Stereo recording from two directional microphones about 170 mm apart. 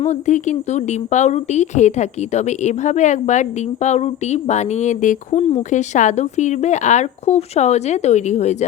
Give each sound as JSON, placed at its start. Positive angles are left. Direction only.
{"t": 0.0, "sound": "a woman's voice", "side_deg": 45}